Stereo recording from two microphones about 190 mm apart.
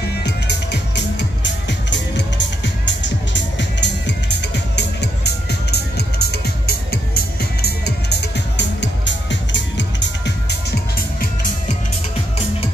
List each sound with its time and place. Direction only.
0.2 s music: 65° left (ahead or behind)